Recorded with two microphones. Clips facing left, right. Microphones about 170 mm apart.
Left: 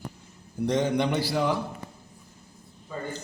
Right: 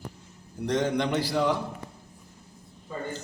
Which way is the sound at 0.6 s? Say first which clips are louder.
Left 2 dB; 10° left (ahead or behind).